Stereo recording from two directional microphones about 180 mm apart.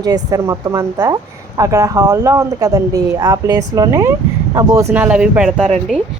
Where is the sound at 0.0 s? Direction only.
20° right (ahead or behind); by 5.6 s 5° right (ahead or behind).